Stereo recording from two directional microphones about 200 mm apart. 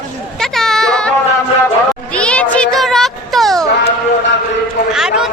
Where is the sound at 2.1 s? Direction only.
5° left (ahead or behind).